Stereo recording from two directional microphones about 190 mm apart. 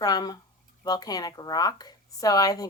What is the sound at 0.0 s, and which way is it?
A woman's voice, 20° left (ahead or behind).